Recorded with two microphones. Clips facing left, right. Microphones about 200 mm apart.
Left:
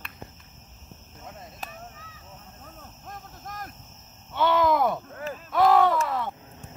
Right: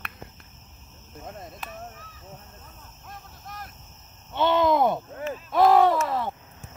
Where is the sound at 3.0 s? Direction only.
45° left (ahead or behind).